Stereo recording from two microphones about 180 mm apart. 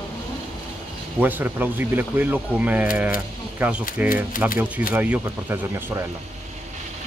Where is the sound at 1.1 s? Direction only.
10° right (ahead or behind).